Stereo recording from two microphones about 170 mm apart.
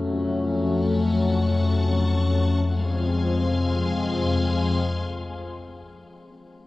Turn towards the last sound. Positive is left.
turn(degrees=0)  # may be behind; listen again after turning